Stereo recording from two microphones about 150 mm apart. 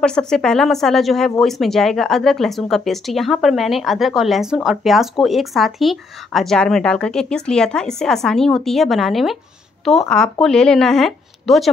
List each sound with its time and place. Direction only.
0.0 s speech: 5° left (ahead or behind)